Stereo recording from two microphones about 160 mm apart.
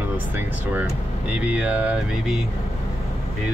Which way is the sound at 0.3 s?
10° right (ahead or behind).